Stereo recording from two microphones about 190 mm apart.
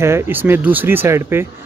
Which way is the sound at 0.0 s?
10° right (ahead or behind).